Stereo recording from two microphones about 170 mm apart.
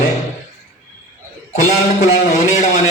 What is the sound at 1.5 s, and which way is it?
A man's voice, 40° left (ahead or behind).